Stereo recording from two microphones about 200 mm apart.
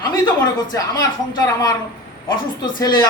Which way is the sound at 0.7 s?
20° left (ahead or behind).